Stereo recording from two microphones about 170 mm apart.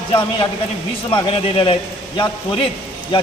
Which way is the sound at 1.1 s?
30° left (ahead or behind).